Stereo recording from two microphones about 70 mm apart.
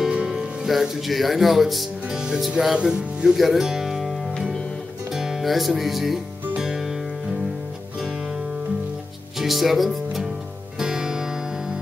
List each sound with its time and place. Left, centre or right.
0.1 s music: centre
0.7 s speech: centre
2.1 s music: centre
5.7 s speech: centre
6.6 s music: centre
9.4 s music: centre